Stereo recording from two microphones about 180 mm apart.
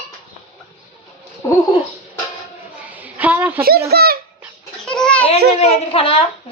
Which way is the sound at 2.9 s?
10° right (ahead or behind).